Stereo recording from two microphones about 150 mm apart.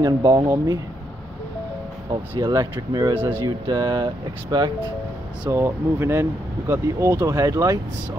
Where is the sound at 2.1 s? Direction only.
30° right (ahead or behind).